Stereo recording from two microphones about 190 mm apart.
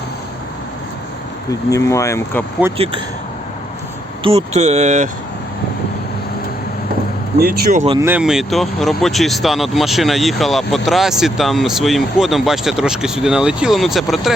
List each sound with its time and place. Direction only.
1.5 s speech: 15° left (ahead or behind)
2.7 s speech: 30° right (ahead or behind)
4.2 s speech: 30° right (ahead or behind)
7.3 s speech: 55° right (ahead or behind)
8.0 s speech: 5° right (ahead or behind)